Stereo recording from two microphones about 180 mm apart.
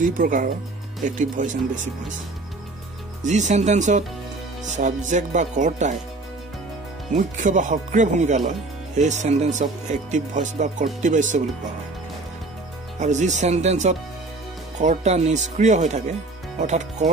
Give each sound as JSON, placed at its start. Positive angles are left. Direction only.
{"t": 0.2, "sound": "speech", "side_deg": -50}
{"t": 3.3, "sound": "speech", "side_deg": -40}
{"t": 7.2, "sound": "speech", "side_deg": -45}
{"t": 13.0, "sound": "speech", "side_deg": -40}